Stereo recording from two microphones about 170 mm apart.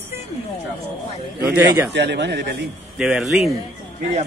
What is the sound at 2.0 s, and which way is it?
Speech, 85° right.